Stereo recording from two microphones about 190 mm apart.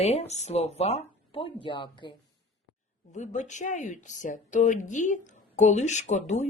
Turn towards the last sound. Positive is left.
turn(degrees=40)  # may be behind; listen again after turning